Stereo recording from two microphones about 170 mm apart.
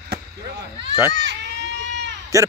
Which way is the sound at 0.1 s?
80° right.